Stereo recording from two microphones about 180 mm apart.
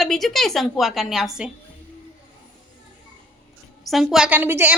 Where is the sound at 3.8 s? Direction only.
Centre (ahead or behind).